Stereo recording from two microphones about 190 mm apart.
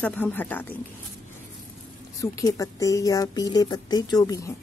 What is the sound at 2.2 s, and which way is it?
Speech, 15° left (ahead or behind).